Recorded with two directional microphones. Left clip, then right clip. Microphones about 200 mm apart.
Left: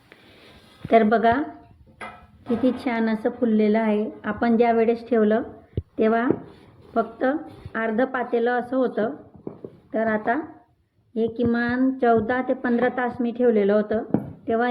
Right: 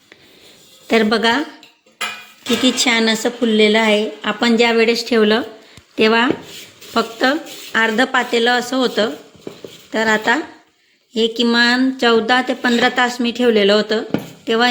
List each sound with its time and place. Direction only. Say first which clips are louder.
0.9 s a woman's voice: right 3 dB; 55° right (ahead or behind)
2.6 s a woman's voice: right 9 dB; 50° right (ahead or behind)